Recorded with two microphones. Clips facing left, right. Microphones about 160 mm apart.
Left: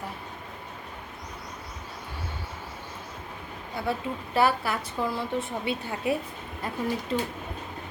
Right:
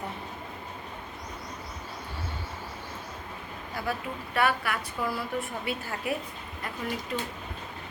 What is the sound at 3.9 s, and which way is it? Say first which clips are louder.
A woman's voice: left 4 dB; 25° left (ahead or behind).